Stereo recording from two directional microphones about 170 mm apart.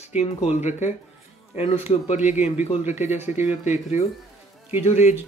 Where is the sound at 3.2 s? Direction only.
40° left (ahead or behind).